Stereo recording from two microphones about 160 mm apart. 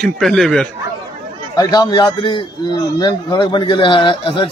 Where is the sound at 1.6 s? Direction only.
25° left (ahead or behind).